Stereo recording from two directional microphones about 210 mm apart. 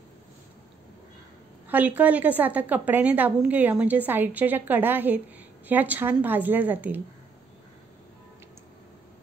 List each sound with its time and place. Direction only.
1.7 s a woman's voice: 5° right (ahead or behind)